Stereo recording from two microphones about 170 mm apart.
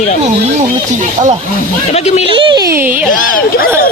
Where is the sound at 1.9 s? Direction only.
40° left (ahead or behind).